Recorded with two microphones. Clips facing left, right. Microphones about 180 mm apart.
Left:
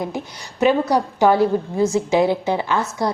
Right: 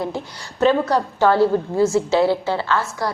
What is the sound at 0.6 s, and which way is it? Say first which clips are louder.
A woman's voice: even; 15° left (ahead or behind).